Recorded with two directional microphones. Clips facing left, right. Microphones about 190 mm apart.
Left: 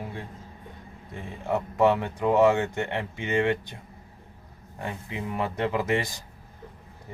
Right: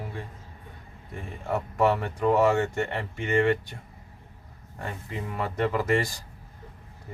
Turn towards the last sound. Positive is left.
turn(degrees=20)  # may be behind; listen again after turning